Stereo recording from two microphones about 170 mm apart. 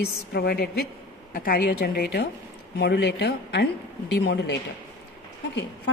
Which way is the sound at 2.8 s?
85° left.